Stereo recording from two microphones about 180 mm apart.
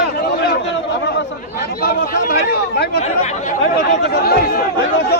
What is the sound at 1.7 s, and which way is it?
Speech, 55° left (ahead or behind).